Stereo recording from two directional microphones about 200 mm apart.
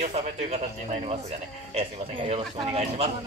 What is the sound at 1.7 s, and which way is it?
Speech, 30° right (ahead or behind).